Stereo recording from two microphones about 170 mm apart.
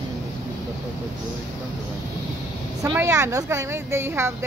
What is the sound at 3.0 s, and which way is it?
A woman's voice, 20° right (ahead or behind).